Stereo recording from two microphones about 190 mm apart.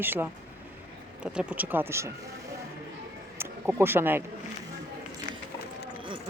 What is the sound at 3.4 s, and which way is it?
Speech, 10° right (ahead or behind).